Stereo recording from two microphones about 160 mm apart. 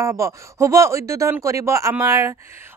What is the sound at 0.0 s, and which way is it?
Speech, 20° right (ahead or behind).